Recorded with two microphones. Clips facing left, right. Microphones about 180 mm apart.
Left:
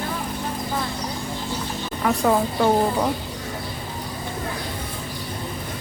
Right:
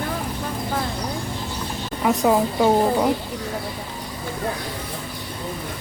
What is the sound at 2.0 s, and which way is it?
Speech, 10° right (ahead or behind).